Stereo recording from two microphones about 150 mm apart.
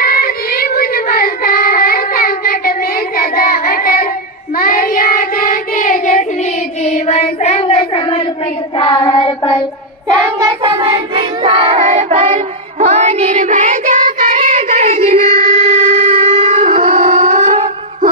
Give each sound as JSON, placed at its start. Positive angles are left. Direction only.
{"t": 0.0, "sound": "child singing", "side_deg": 80}
{"t": 6.9, "sound": "child singing", "side_deg": 45}
{"t": 10.1, "sound": "child singing", "side_deg": -30}